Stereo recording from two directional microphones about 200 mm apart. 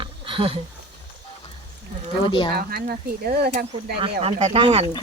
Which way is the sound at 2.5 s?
50° right (ahead or behind).